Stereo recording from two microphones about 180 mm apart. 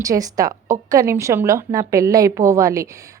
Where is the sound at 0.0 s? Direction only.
20° right (ahead or behind).